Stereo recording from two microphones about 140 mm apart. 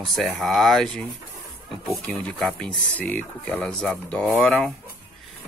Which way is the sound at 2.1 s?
10° left (ahead or behind).